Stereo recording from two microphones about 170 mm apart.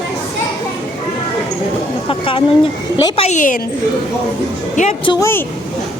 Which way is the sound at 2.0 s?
30° left (ahead or behind).